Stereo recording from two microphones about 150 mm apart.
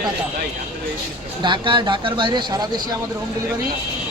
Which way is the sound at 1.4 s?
30° right (ahead or behind).